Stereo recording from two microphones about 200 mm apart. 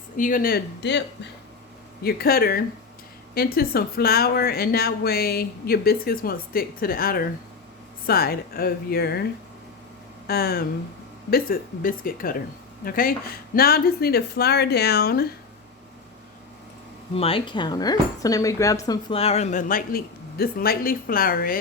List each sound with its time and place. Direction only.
0.2 s speech: 45° left (ahead or behind); by 1.3 s 60° left (ahead or behind)
2.0 s speech: 50° left (ahead or behind)
10.2 s speech: 50° left (ahead or behind)
17.2 s speech: 25° left (ahead or behind); by 21.6 s 45° left (ahead or behind)